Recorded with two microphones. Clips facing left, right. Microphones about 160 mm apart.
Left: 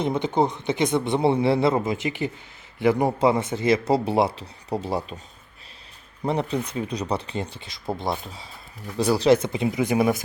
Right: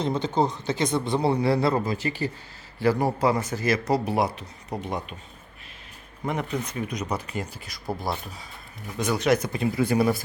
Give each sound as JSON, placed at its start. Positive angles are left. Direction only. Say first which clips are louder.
{"t": 0.0, "sound": "speech", "louder": "left 2 dB", "side_deg": 20}
{"t": 6.2, "sound": "speech", "louder": "left 4 dB", "side_deg": 30}